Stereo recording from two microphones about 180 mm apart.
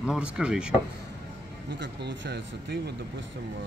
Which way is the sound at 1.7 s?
70° right (ahead or behind).